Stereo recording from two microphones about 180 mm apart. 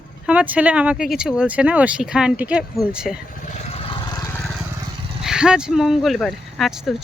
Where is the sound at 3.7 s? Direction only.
30° left (ahead or behind).